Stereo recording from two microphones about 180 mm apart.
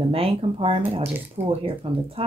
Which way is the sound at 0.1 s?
30° right (ahead or behind).